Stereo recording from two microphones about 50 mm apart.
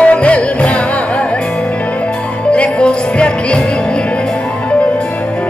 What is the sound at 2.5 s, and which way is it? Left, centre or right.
Music, left.